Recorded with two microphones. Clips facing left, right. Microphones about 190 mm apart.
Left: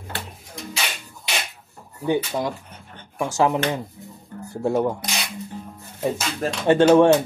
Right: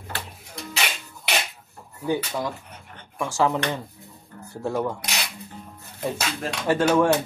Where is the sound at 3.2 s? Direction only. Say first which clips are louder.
Left 3 dB; 20° left (ahead or behind).